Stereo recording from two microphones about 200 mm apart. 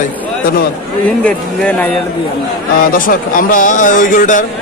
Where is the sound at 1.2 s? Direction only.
5° left (ahead or behind).